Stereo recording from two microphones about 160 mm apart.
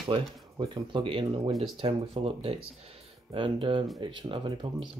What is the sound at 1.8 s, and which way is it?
Speech, 35° right (ahead or behind).